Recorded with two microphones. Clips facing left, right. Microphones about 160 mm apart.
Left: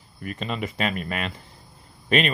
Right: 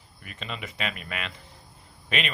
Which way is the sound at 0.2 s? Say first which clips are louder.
Left 8 dB; 40° left (ahead or behind).